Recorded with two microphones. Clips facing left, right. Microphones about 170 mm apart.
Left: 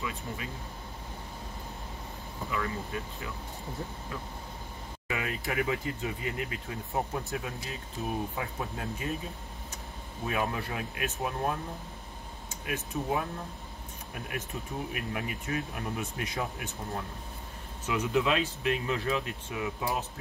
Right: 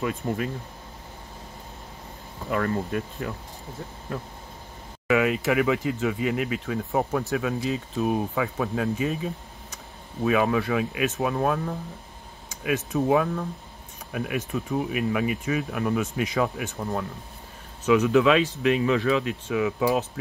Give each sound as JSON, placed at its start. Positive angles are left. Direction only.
{"t": 0.0, "sound": "speech", "side_deg": -50}
{"t": 2.5, "sound": "speech", "side_deg": -55}
{"t": 5.0, "sound": "speech", "side_deg": -90}
{"t": 10.2, "sound": "speech", "side_deg": -90}